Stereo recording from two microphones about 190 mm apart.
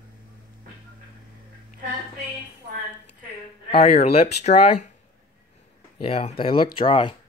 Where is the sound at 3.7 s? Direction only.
35° left (ahead or behind).